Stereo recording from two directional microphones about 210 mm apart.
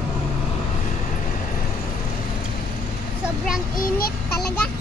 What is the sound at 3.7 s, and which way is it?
Child singing, 45° left (ahead or behind).